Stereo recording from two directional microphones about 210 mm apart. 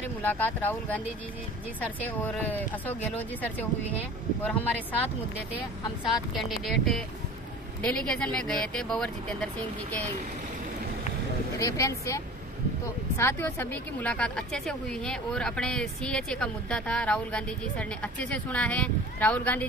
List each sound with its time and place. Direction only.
0.2 s speech: 10° left (ahead or behind)
6.0 s a woman's voice: centre (ahead or behind)
11.5 s speech: 15° left (ahead or behind)
13.2 s a woman's voice: 10° left (ahead or behind)